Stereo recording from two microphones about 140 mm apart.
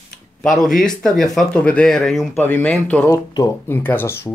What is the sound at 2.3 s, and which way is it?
Speech, 15° left (ahead or behind).